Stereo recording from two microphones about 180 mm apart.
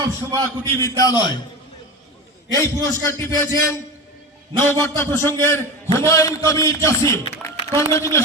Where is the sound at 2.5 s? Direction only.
15° left (ahead or behind).